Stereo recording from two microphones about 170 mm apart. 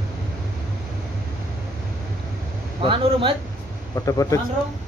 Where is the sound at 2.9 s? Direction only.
30° right (ahead or behind).